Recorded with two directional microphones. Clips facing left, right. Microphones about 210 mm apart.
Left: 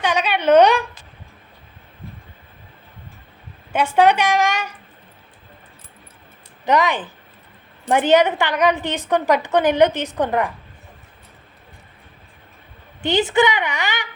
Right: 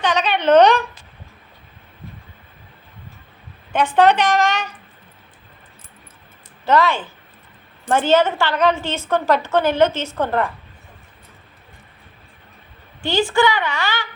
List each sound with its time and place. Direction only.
0.0 s a woman's voice: 10° left (ahead or behind)
3.7 s a woman's voice: 10° left (ahead or behind)
6.7 s a woman's voice: 15° left (ahead or behind)
13.0 s a woman's voice: 20° left (ahead or behind)